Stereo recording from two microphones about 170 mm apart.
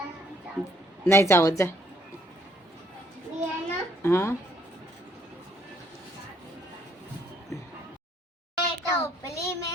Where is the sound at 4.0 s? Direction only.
15° left (ahead or behind).